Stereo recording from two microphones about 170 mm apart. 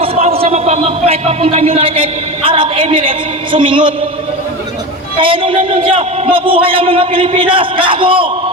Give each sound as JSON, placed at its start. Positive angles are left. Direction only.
{"t": 0.0, "sound": "a man's voice", "side_deg": -35}
{"t": 5.1, "sound": "a man's voice", "side_deg": -30}